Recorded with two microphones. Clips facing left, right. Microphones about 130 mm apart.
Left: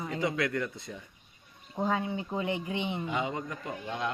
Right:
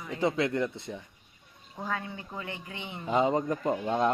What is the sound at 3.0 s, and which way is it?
Speech, 40° right (ahead or behind).